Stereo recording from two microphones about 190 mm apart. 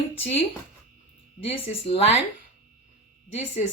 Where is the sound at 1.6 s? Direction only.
30° left (ahead or behind).